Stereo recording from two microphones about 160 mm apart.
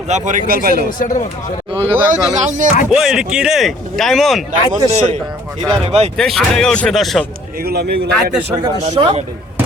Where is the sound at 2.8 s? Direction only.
5° right (ahead or behind).